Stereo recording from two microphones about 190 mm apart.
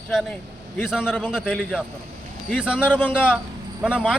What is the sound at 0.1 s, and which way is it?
A man's voice, centre (ahead or behind).